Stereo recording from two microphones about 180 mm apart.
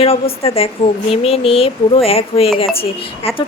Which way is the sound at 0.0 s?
30° left (ahead or behind).